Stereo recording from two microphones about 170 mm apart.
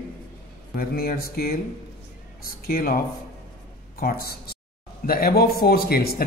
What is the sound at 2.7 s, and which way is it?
Speech, 60° left (ahead or behind).